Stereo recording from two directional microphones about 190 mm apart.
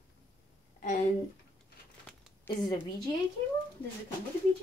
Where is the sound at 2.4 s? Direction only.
30° left (ahead or behind).